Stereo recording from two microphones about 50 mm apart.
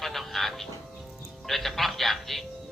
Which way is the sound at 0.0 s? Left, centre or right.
Centre.